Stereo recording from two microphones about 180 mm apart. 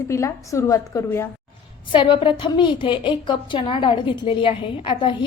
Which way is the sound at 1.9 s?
25° left (ahead or behind).